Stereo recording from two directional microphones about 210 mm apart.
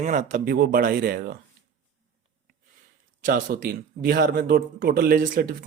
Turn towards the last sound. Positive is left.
turn(degrees=-40)  # may be behind; listen again after turning